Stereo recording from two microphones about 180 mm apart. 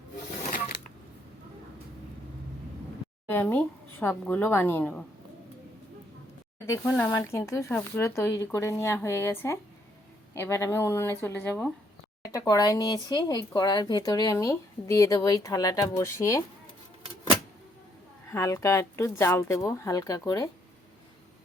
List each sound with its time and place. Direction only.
3.2 s a sound: 10° left (ahead or behind)
4.0 s speech: 10° left (ahead or behind)
6.7 s speech: 10° left (ahead or behind)
18.3 s speech: 15° left (ahead or behind)